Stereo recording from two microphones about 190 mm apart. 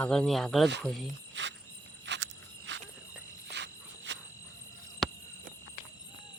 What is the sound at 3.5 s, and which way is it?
Insect, 65° right (ahead or behind).